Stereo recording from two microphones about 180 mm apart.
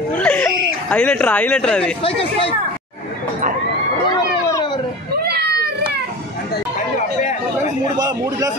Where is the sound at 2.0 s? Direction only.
30° left (ahead or behind).